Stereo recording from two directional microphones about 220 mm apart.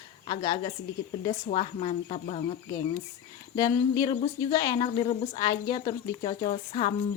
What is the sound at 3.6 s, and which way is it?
Speech, 15° left (ahead or behind).